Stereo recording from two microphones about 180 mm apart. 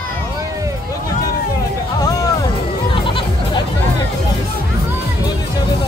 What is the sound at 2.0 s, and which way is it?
Music, 20° left (ahead or behind).